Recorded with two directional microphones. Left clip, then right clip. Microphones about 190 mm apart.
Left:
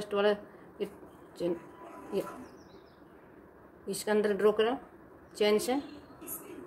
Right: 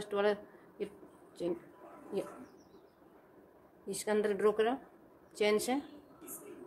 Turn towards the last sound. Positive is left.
turn(degrees=-15)  # may be behind; listen again after turning